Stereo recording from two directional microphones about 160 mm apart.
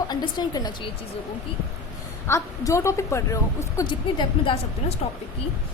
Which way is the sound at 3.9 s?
30° left (ahead or behind).